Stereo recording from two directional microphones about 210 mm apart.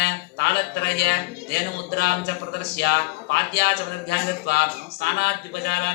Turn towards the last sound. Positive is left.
turn(degrees=50)  # may be behind; listen again after turning